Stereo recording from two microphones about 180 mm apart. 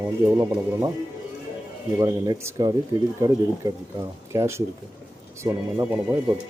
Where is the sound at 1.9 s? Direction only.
20° right (ahead or behind).